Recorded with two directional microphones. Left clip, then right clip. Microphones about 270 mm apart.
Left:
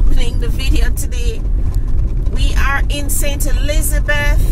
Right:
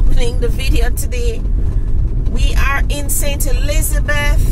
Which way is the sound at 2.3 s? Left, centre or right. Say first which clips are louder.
Even; centre.